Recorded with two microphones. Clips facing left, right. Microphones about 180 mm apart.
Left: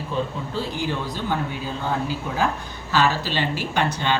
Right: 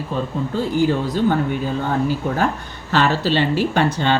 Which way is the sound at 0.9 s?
50° right (ahead or behind).